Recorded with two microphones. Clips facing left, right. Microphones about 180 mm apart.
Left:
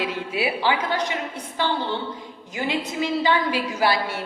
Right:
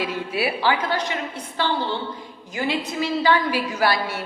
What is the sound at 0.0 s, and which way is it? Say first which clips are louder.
Speech: right 1 dB; 15° left (ahead or behind).